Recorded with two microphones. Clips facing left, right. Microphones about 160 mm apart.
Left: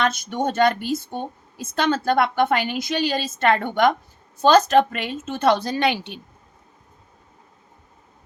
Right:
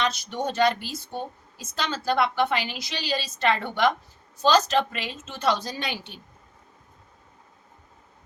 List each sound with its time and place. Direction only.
0.0 s a woman's voice: 50° left (ahead or behind); by 6.1 s 65° left (ahead or behind)